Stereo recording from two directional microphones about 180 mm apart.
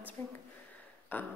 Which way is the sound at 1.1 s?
10° left (ahead or behind).